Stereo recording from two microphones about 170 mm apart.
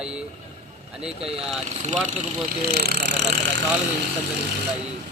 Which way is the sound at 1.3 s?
Centre (ahead or behind).